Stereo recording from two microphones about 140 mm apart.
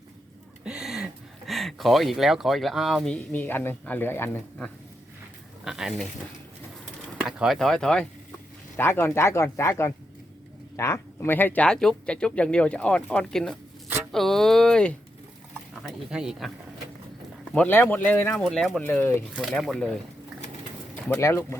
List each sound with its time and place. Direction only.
0.6 s a sound: 5° right (ahead or behind)
3.3 s speech: 15° left (ahead or behind)
5.6 s speech: 5° right (ahead or behind)
7.1 s speech: 5° right (ahead or behind)
8.7 s speech: 15° left (ahead or behind); by 16.5 s 5° right (ahead or behind)
17.5 s speech: 10° left (ahead or behind)
19.4 s speech: centre (ahead or behind)
21.1 s speech: 20° left (ahead or behind)